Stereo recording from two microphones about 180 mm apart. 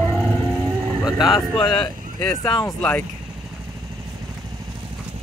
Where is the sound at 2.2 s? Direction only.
15° left (ahead or behind).